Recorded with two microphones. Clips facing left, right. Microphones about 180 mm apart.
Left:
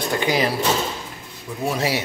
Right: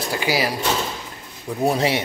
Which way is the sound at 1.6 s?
30° right (ahead or behind).